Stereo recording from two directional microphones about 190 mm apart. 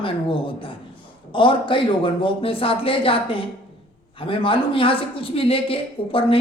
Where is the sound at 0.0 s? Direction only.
25° left (ahead or behind).